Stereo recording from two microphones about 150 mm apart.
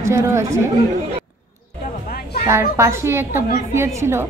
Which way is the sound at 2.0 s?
90° left.